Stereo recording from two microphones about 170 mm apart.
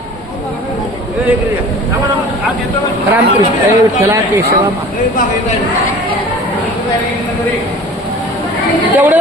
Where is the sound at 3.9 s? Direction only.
15° right (ahead or behind).